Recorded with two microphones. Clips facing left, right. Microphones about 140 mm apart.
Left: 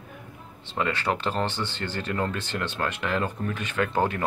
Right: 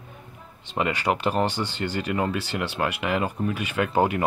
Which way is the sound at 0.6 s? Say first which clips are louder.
Right 2 dB; 15° right (ahead or behind).